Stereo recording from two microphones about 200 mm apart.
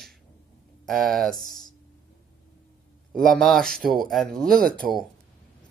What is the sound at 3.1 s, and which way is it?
Speech, 5° left (ahead or behind).